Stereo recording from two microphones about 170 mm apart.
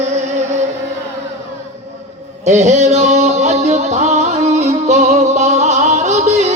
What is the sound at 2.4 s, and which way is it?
Music, 40° right (ahead or behind).